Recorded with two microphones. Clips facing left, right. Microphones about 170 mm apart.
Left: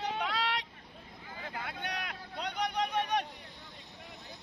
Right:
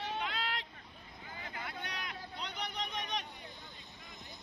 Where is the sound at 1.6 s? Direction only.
65° left (ahead or behind).